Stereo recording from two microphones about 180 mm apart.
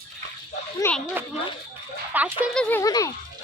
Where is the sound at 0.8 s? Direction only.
20° left (ahead or behind).